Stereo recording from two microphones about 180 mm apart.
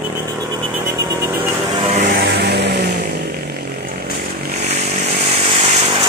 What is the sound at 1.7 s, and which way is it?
Vehicle, 40° right (ahead or behind).